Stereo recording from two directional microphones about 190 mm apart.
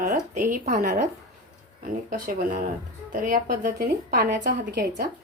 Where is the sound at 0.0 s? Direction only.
45° right (ahead or behind).